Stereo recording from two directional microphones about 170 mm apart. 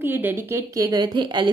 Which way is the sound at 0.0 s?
10° right (ahead or behind).